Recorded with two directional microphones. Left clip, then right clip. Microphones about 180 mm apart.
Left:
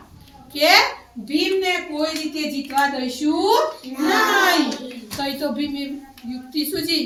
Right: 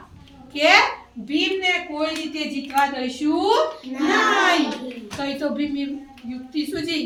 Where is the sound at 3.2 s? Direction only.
Centre (ahead or behind).